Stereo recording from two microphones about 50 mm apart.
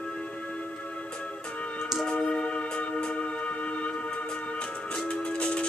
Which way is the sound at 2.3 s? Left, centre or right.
Centre.